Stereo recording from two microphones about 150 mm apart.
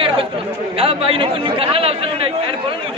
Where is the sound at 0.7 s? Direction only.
40° right (ahead or behind).